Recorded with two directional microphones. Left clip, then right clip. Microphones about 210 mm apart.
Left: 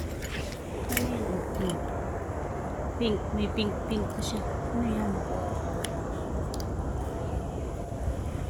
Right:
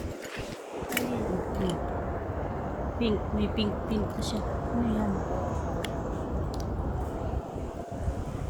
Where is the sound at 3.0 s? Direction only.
10° right (ahead or behind).